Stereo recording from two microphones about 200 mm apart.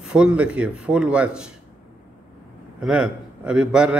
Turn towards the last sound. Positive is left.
turn(degrees=-5)  # may be behind; listen again after turning